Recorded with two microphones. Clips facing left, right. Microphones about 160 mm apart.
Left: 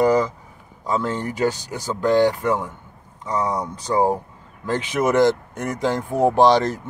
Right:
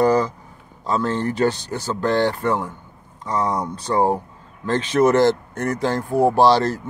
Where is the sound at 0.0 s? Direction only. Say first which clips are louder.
Even; 15° left (ahead or behind).